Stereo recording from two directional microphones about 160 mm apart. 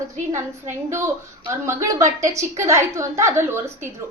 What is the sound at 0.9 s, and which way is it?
A woman's voice, 15° right (ahead or behind).